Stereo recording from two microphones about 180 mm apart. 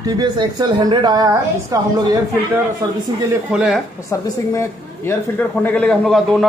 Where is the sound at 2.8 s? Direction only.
20° right (ahead or behind).